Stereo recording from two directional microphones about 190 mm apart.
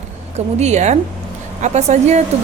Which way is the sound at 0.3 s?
35° right (ahead or behind).